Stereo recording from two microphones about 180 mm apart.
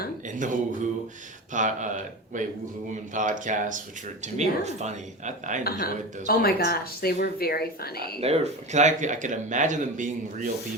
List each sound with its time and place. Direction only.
0.3 s speech: 45° right (ahead or behind)
5.6 s speech: 55° left (ahead or behind)
8.2 s speech: 35° right (ahead or behind)